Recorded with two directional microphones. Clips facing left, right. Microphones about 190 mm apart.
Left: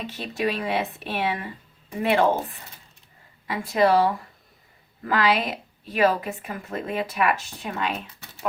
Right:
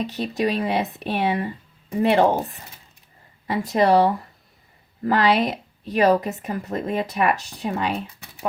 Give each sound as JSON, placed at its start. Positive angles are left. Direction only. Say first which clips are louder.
{"t": 0.0, "sound": "a woman's voice", "louder": "right 4 dB", "side_deg": -40}